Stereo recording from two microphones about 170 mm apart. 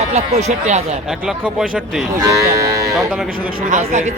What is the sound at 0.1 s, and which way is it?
Speech, 40° right (ahead or behind).